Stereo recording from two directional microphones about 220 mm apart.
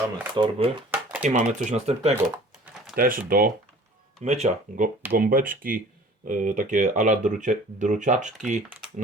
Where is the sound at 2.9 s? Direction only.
40° right (ahead or behind).